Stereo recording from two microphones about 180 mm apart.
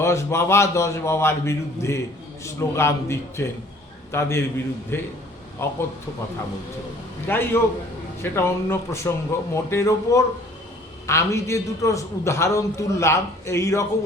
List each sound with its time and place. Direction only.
0.0 s a man's voice: 15° left (ahead or behind)
7.3 s a man's voice: 10° left (ahead or behind)